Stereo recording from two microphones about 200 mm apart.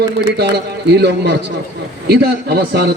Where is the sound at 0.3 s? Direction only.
55° right (ahead or behind).